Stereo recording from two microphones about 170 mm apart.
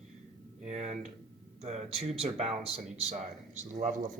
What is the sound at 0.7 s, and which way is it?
Speech, 45° right (ahead or behind).